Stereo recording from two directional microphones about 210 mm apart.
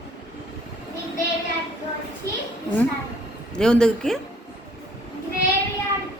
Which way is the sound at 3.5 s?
5° left (ahead or behind).